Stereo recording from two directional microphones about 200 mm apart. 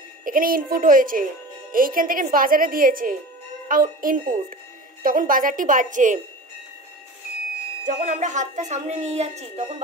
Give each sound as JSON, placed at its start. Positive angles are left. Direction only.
{"t": 0.2, "sound": "speech", "side_deg": -45}
{"t": 7.8, "sound": "speech", "side_deg": -40}